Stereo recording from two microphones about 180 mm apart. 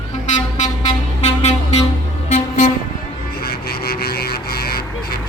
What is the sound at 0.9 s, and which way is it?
Vehicle, 35° left (ahead or behind).